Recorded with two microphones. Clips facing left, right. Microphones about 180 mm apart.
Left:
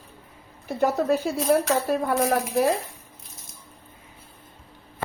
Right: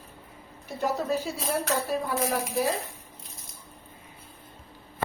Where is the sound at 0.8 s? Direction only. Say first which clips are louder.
Left 6 dB; 60° left (ahead or behind).